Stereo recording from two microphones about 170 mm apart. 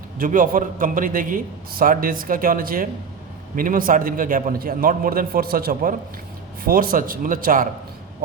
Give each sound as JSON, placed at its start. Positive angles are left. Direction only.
{"t": 0.2, "sound": "a man's voice", "side_deg": -55}